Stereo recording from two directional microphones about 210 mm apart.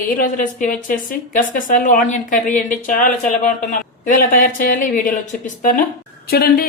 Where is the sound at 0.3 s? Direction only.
40° left (ahead or behind).